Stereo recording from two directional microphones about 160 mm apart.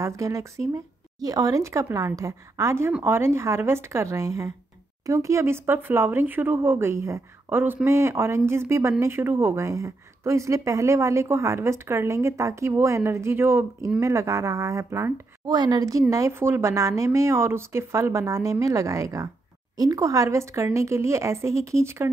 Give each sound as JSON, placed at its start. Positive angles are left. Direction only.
{"t": 0.0, "sound": "a woman's voice", "side_deg": -20}